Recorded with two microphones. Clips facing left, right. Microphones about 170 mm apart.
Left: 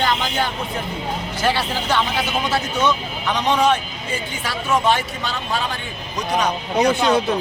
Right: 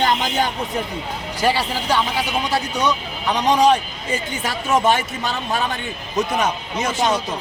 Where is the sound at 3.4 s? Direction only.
35° right (ahead or behind).